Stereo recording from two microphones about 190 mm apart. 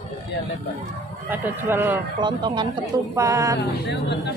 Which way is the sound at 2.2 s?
25° right (ahead or behind).